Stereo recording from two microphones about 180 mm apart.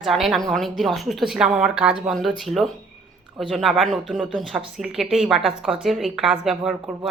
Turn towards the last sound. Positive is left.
turn(degrees=0)  # may be behind; listen again after turning